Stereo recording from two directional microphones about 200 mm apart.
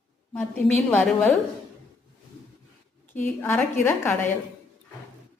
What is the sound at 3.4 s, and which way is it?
Speech, 10° left (ahead or behind).